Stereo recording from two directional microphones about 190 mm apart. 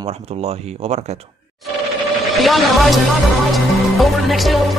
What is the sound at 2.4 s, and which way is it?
Music, centre (ahead or behind).